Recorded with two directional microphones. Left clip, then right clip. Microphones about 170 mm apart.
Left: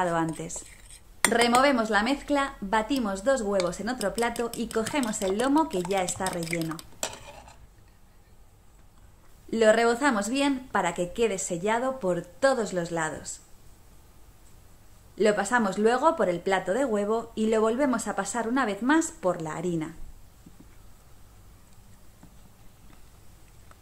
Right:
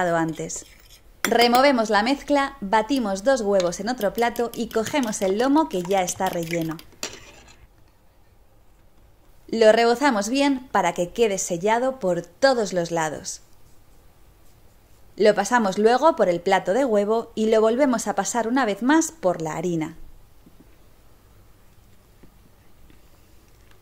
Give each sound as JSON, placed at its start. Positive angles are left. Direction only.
{"t": 0.0, "sound": "speech", "side_deg": -30}
{"t": 9.5, "sound": "speech", "side_deg": -35}
{"t": 15.1, "sound": "speech", "side_deg": -40}